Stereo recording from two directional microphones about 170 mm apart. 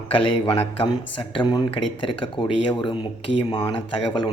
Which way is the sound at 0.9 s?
25° left (ahead or behind).